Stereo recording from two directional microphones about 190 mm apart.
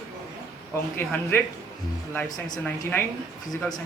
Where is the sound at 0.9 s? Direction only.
10° left (ahead or behind).